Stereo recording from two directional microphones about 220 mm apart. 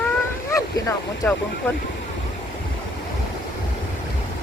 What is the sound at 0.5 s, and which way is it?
Speech, 15° left (ahead or behind).